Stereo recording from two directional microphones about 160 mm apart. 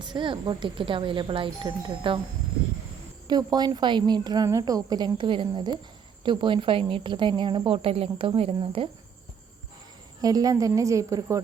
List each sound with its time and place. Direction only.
0.0 s speech: 30° right (ahead or behind)
3.2 s a woman's voice: 25° right (ahead or behind)
10.2 s a woman's voice: 25° right (ahead or behind)